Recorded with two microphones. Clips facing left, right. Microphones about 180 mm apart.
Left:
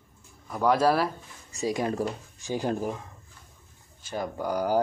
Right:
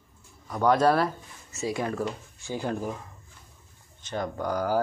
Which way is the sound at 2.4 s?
15° left (ahead or behind).